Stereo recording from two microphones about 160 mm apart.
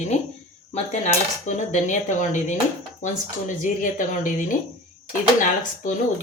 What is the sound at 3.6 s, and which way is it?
Speech, 55° left (ahead or behind).